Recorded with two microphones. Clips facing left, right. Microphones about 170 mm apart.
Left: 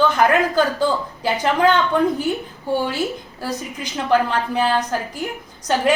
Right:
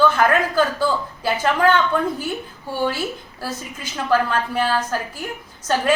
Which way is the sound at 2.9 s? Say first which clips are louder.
Left 1 dB; 15° left (ahead or behind).